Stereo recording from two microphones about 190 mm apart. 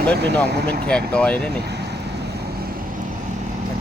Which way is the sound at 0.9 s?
5° left (ahead or behind).